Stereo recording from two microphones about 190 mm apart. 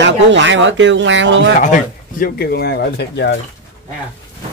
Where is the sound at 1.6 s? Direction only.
45° left (ahead or behind); by 3.4 s 60° left (ahead or behind).